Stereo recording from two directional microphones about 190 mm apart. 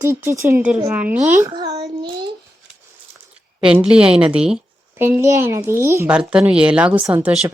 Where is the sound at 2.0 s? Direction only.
25° right (ahead or behind).